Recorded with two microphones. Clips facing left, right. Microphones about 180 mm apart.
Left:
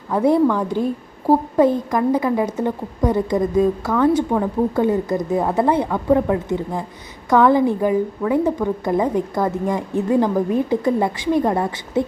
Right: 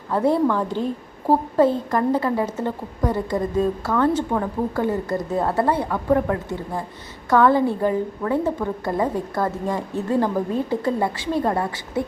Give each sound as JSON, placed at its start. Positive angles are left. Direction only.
{"t": 0.1, "sound": "a woman's voice", "side_deg": 15}